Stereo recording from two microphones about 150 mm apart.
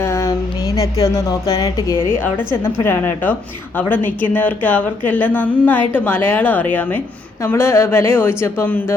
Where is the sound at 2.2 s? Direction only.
15° left (ahead or behind).